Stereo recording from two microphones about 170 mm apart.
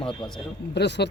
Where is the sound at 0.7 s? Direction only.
80° left.